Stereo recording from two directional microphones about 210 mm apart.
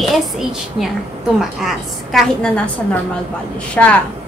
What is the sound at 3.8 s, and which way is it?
Speech, 5° left (ahead or behind).